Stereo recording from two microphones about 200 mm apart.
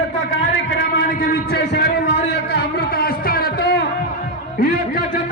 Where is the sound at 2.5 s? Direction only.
50° left (ahead or behind).